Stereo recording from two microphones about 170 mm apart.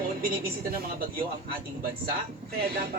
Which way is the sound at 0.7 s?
60° right (ahead or behind).